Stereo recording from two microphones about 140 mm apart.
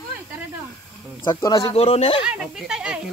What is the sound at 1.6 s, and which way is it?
Speech, 45° left (ahead or behind).